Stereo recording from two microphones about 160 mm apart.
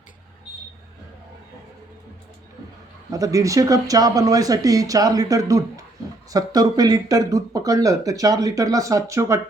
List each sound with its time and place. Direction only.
3.1 s speech: 20° right (ahead or behind)